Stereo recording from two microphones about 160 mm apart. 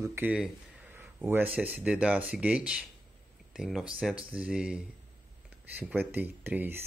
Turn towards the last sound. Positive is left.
turn(degrees=-15)  # may be behind; listen again after turning